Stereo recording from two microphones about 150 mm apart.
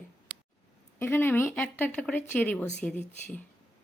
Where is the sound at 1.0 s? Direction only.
15° left (ahead or behind).